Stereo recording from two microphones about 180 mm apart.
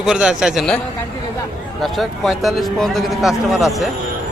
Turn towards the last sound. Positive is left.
turn(degrees=0)  # may be behind; listen again after turning